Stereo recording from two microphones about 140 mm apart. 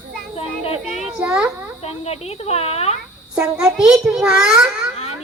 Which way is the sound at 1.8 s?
50° left (ahead or behind).